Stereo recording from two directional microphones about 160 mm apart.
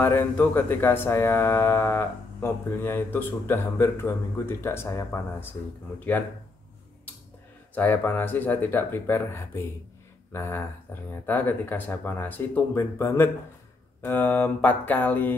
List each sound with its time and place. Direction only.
0.0 s speech: 15° left (ahead or behind)
7.7 s speech: 10° left (ahead or behind)